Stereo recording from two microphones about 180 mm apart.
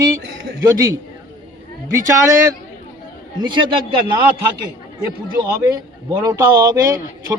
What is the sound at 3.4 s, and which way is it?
Speech, 25° right (ahead or behind).